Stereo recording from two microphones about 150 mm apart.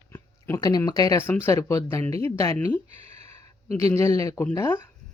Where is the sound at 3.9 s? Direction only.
20° left (ahead or behind).